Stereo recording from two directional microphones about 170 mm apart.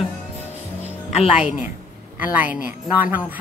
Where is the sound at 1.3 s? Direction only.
5° right (ahead or behind).